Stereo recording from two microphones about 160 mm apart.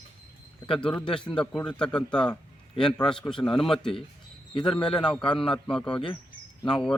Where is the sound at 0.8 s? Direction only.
5° left (ahead or behind).